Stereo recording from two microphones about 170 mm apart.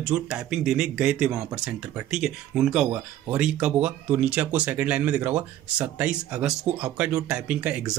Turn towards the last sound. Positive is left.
turn(degrees=-5)  # may be behind; listen again after turning